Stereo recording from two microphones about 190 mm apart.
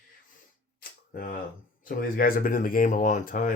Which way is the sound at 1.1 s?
50° left (ahead or behind).